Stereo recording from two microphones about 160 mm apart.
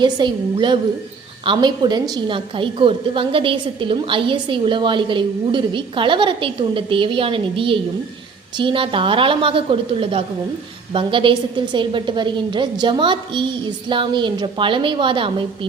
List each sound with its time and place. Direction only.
0.0 s a woman's voice: 30° right (ahead or behind)